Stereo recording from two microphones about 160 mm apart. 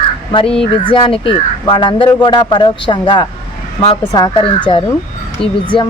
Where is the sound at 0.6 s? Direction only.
35° left (ahead or behind).